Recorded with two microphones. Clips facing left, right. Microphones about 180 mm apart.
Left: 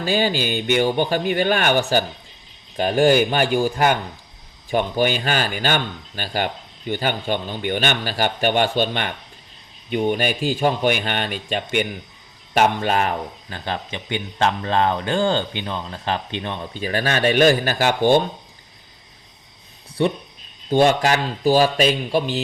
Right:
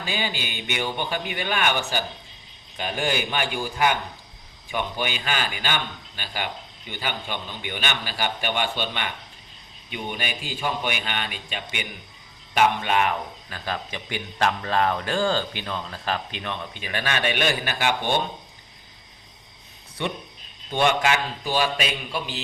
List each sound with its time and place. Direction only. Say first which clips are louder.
0.0 s speech: left 9 dB; 40° left (ahead or behind)
20.0 s speech: left 9 dB; 35° left (ahead or behind)